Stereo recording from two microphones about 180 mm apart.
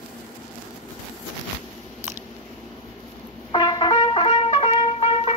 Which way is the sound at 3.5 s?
25° left (ahead or behind).